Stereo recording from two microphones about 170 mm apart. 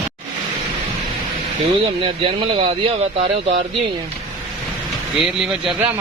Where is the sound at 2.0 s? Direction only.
30° right (ahead or behind).